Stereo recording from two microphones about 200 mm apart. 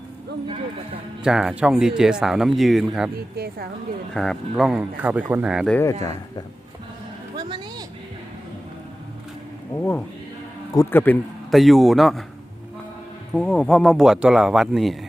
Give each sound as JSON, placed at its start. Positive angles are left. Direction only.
{"t": 1.2, "sound": "speech", "side_deg": -5}
{"t": 3.3, "sound": "speech", "side_deg": -50}
{"t": 4.1, "sound": "speech", "side_deg": 0}
{"t": 5.7, "sound": "speech", "side_deg": 15}
{"t": 7.3, "sound": "a sound", "side_deg": -20}
{"t": 10.8, "sound": "speech", "side_deg": 10}
{"t": 13.3, "sound": "speech", "side_deg": 5}